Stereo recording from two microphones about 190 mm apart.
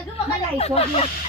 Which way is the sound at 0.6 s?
35° left (ahead or behind).